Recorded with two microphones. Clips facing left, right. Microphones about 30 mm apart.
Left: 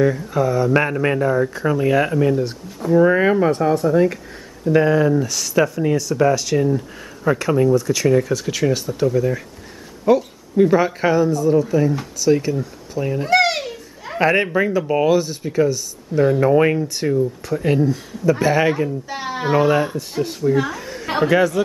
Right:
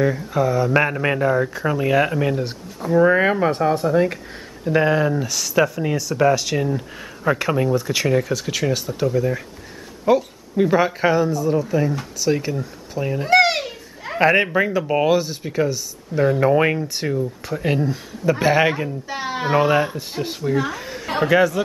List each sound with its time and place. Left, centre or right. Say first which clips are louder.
0.0 s a child's voice: left 2 dB; centre
2.8 s a child's voice: left 1 dB; centre
8.2 s a child's voice: left 3 dB; centre